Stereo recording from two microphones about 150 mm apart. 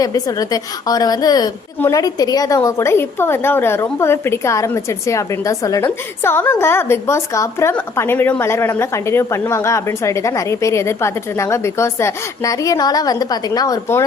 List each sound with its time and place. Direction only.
0.0 s a woman's voice: 25° left (ahead or behind)